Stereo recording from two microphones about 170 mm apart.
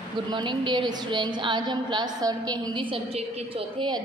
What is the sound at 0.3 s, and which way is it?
A woman's voice, 30° right (ahead or behind).